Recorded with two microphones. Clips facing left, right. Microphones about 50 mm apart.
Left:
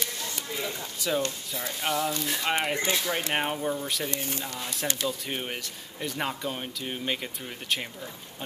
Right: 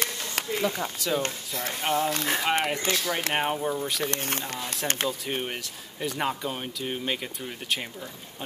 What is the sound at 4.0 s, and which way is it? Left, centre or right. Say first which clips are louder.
Speech: right 3 dB; right.